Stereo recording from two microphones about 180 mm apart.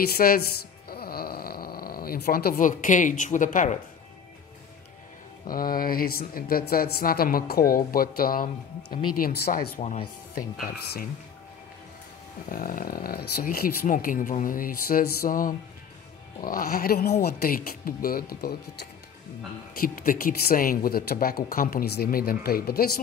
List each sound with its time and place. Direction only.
0.1 s speech: 55° left (ahead or behind)
0.8 s a sound: 60° left (ahead or behind)
5.5 s speech: 55° left (ahead or behind)
9.8 s speech: 35° left (ahead or behind)
10.3 s speech: 55° left (ahead or behind)
12.4 s speech: 50° left (ahead or behind)